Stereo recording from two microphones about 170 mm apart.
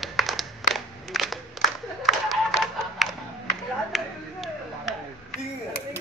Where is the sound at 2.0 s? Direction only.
Centre (ahead or behind).